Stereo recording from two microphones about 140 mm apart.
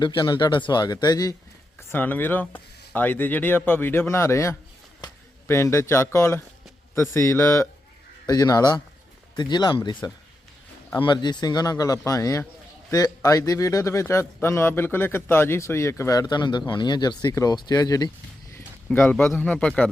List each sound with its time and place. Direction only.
0.0 s speech: 35° left (ahead or behind)
1.9 s a man's voice: 15° left (ahead or behind)
18.9 s speech: 5° left (ahead or behind)